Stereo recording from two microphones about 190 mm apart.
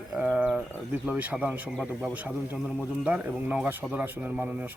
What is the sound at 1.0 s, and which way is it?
Speech, 5° right (ahead or behind).